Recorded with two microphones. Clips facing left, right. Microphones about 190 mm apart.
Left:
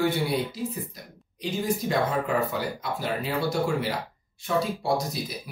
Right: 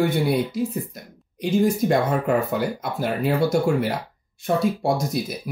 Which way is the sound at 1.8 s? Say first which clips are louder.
Right 5 dB; 55° right (ahead or behind).